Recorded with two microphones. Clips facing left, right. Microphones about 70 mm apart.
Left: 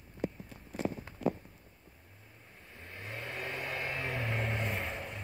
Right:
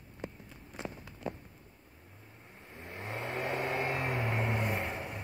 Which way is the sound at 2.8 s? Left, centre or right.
Right.